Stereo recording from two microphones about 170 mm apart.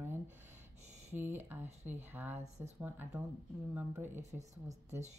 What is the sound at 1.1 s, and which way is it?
Speech, 15° right (ahead or behind).